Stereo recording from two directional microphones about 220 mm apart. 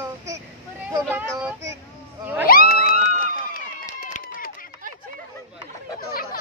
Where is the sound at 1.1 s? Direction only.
10° right (ahead or behind).